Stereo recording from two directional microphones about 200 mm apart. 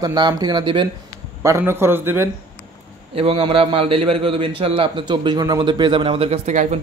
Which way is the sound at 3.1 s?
25° right (ahead or behind).